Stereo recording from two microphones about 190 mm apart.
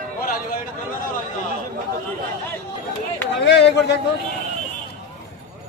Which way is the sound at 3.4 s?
60° left (ahead or behind).